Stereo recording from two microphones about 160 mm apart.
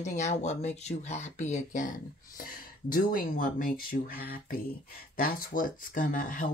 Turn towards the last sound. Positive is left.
turn(degrees=55)  # may be behind; listen again after turning